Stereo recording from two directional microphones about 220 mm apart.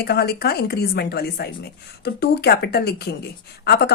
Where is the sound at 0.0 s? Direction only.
45° left (ahead or behind).